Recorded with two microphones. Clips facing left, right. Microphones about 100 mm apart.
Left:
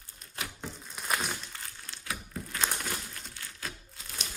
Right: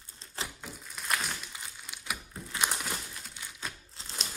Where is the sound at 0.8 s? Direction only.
5° left (ahead or behind).